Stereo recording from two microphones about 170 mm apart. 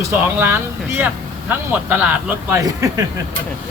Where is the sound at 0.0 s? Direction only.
15° right (ahead or behind).